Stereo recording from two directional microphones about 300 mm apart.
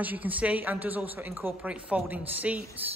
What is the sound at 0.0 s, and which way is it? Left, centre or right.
A woman's voice, centre.